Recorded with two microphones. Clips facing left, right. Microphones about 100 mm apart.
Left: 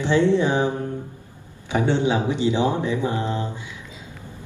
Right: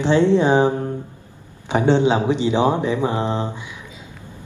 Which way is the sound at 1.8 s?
20° right (ahead or behind).